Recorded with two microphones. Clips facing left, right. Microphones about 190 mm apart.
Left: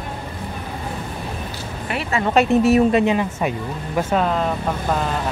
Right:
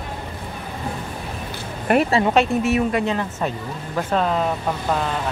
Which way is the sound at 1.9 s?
50° right (ahead or behind).